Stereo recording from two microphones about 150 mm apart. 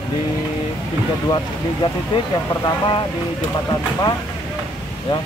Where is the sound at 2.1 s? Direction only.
35° left (ahead or behind).